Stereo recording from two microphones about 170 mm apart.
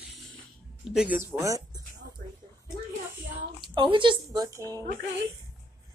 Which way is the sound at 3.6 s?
25° right (ahead or behind).